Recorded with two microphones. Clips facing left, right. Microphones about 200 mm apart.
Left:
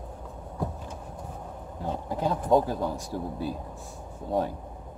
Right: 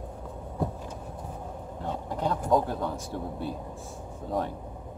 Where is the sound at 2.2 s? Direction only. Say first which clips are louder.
Left 2 dB; 10° left (ahead or behind).